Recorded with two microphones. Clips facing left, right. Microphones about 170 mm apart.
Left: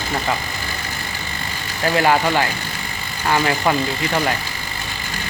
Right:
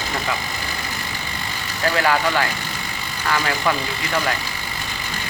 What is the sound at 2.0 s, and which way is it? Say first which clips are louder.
Speech: left 3 dB; 25° left (ahead or behind).